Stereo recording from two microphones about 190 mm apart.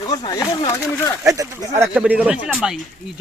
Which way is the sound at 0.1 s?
20° left (ahead or behind).